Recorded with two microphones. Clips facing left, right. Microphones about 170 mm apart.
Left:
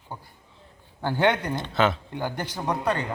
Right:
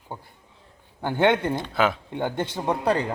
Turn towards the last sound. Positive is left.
turn(degrees=-30)  # may be behind; listen again after turning